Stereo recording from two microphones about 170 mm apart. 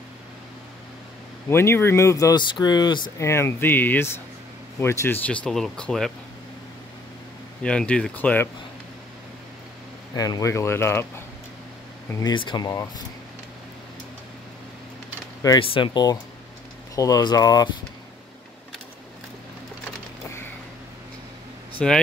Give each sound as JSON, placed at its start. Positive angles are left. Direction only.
{"t": 1.5, "sound": "speech", "side_deg": 15}
{"t": 3.3, "sound": "speech", "side_deg": 15}
{"t": 7.6, "sound": "speech", "side_deg": 5}
{"t": 10.1, "sound": "speech", "side_deg": 20}
{"t": 15.6, "sound": "speech", "side_deg": 30}
{"t": 21.7, "sound": "a man's voice", "side_deg": 5}